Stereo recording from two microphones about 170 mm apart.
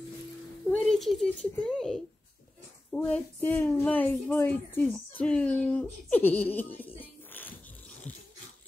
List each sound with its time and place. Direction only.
0.7 s a sound: 5° left (ahead or behind)
1.6 s speech: 5° left (ahead or behind)
7.0 s music: 10° left (ahead or behind)